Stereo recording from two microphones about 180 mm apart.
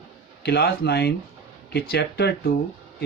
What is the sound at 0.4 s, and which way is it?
Speech, 65° left (ahead or behind).